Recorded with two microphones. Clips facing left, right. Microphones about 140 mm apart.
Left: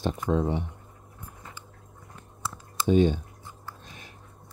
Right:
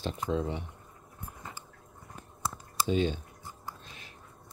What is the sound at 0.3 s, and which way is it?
Speech, 55° left (ahead or behind).